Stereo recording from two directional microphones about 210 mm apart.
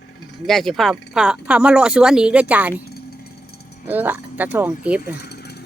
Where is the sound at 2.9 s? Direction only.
50° left (ahead or behind).